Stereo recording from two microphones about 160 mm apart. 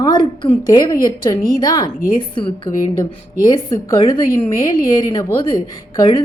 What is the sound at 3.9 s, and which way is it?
A woman's voice, 25° left (ahead or behind).